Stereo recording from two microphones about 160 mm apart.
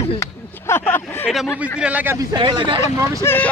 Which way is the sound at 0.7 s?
15° left (ahead or behind).